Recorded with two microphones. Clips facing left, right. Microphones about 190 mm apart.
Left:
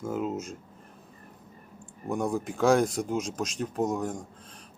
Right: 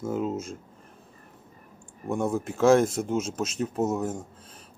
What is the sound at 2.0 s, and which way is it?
A man's voice, centre (ahead or behind).